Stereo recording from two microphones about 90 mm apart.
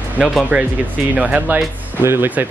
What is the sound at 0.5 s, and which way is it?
Speech, 15° right (ahead or behind).